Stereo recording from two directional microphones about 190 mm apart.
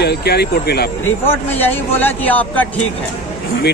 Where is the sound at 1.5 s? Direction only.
10° left (ahead or behind).